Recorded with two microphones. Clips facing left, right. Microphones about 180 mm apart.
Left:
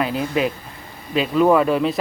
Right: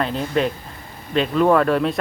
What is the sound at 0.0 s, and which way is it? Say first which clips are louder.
Speech: even; 5° left (ahead or behind).